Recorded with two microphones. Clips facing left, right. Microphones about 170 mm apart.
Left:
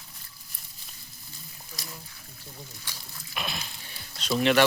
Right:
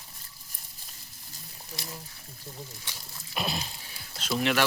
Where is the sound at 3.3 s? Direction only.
35° right (ahead or behind).